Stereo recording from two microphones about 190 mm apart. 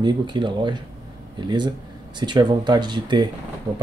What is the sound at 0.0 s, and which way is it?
Speech, 25° right (ahead or behind).